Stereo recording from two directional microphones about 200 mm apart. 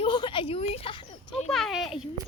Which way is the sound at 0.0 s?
25° left (ahead or behind).